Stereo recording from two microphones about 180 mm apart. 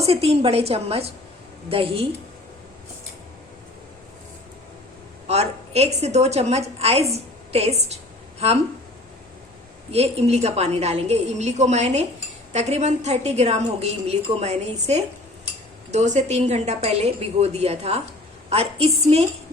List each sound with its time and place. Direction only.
0.0 s a woman's voice: 35° right (ahead or behind)
5.3 s a woman's voice: 35° right (ahead or behind)
9.9 s a woman's voice: 35° right (ahead or behind)